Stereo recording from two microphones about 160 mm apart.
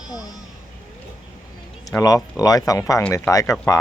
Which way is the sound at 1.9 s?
20° left (ahead or behind).